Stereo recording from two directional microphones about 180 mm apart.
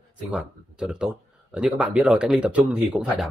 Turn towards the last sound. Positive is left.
turn(degrees=-5)  # may be behind; listen again after turning